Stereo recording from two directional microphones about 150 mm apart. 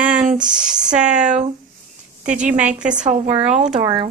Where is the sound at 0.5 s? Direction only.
5° right (ahead or behind).